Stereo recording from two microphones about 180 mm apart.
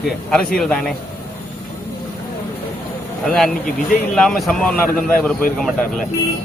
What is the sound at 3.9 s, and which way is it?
Speech, centre (ahead or behind).